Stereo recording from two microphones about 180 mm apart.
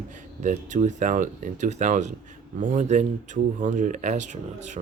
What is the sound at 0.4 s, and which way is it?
Speech, 40° right (ahead or behind).